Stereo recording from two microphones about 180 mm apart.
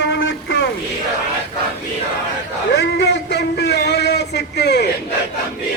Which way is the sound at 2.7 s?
75° left (ahead or behind).